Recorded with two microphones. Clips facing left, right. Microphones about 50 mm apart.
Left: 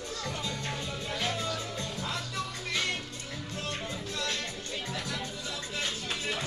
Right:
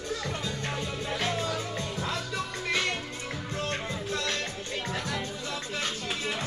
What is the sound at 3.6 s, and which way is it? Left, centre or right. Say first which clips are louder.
Music: right 3 dB; right.